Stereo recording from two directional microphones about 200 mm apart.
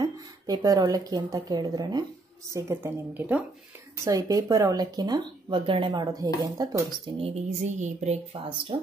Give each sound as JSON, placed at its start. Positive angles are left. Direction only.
{"t": 0.0, "sound": "a woman's voice", "side_deg": -20}
{"t": 7.2, "sound": "speech", "side_deg": -30}